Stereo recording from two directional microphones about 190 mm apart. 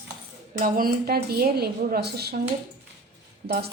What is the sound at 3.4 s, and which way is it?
Speech, 55° right (ahead or behind).